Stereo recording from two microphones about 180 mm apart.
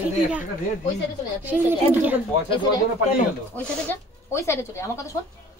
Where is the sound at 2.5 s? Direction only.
25° left (ahead or behind).